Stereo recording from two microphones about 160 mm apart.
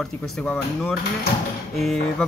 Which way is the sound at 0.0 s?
Centre (ahead or behind).